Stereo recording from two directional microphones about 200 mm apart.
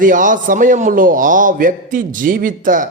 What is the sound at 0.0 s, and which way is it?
A man's voice, 40° right (ahead or behind).